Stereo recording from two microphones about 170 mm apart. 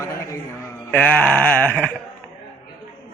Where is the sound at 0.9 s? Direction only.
5° left (ahead or behind).